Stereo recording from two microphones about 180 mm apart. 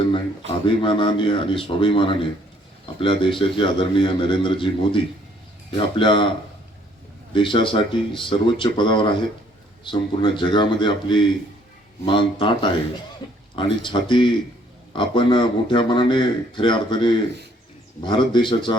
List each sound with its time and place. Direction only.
0.6 s a man's voice: 30° left (ahead or behind)
7.3 s a man's voice: 25° left (ahead or behind)